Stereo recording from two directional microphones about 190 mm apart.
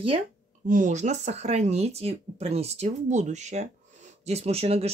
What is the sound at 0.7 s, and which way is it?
Speech, 40° right (ahead or behind).